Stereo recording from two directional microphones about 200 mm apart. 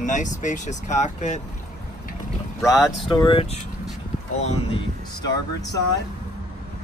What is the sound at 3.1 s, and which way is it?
Speech, 25° left (ahead or behind).